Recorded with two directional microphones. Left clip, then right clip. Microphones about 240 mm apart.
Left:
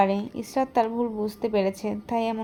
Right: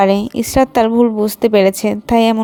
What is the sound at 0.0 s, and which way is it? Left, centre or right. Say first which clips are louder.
A woman's voice: right 10 dB; right.